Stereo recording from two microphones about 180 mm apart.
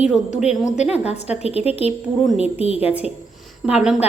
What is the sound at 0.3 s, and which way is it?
Speech, 40° left (ahead or behind).